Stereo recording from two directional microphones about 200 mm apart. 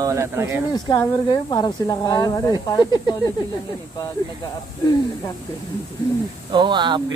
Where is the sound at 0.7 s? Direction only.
20° left (ahead or behind).